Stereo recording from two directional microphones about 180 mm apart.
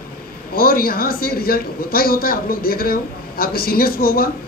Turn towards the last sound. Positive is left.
turn(degrees=55)  # may be behind; listen again after turning